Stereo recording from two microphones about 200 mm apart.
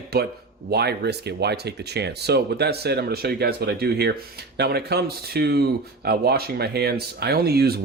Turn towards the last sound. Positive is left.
turn(degrees=-50)  # may be behind; listen again after turning